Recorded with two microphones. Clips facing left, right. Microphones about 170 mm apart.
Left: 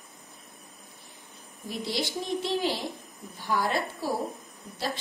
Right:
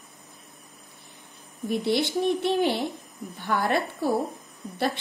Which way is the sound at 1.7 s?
60° right (ahead or behind).